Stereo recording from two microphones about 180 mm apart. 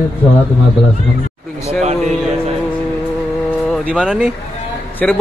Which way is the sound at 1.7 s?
35° right (ahead or behind).